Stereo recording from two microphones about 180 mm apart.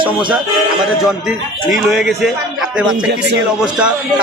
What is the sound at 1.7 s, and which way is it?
Speech, centre (ahead or behind).